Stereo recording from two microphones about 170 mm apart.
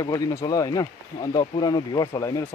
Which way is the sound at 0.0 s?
20° left (ahead or behind).